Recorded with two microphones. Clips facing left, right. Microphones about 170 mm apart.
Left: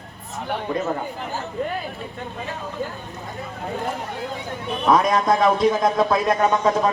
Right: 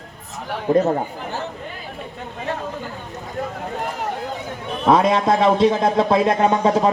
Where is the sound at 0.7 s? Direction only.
45° right (ahead or behind).